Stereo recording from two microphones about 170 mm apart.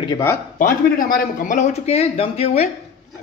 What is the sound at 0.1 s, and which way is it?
Speech, 15° left (ahead or behind).